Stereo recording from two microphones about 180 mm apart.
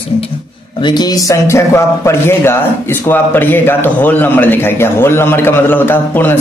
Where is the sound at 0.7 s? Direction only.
25° left (ahead or behind).